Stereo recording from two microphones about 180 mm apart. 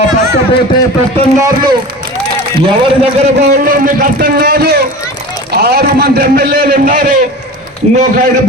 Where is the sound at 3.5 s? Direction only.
50° right (ahead or behind).